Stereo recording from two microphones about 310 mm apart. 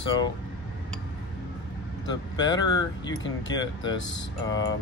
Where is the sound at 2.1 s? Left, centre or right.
Centre.